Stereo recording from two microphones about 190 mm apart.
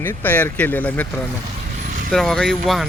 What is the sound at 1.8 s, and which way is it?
Vehicle, 45° right (ahead or behind).